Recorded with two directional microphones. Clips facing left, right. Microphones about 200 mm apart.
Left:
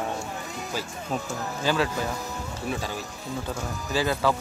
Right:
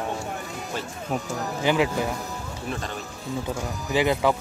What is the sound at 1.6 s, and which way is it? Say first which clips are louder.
Speech: right 3 dB; 15° right (ahead or behind).